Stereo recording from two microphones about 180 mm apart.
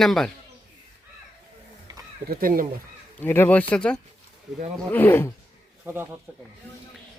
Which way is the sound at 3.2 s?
10° left (ahead or behind).